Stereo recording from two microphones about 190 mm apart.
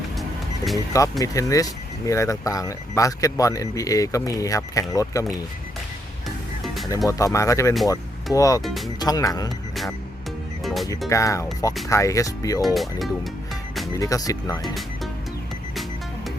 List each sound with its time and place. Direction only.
0.2 s music: centre (ahead or behind)
1.2 s speech: 15° left (ahead or behind)
7.1 s speech: 15° left (ahead or behind)
10.6 s music: centre (ahead or behind)
11.1 s speech: 15° left (ahead or behind)
12.6 s speech: centre (ahead or behind)
13.9 s speech: 15° left (ahead or behind)
15.7 s music: centre (ahead or behind)